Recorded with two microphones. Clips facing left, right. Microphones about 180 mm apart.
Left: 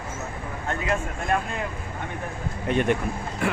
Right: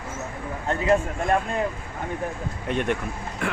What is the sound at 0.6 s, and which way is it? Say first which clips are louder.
Speech: right 6 dB; 35° right (ahead or behind).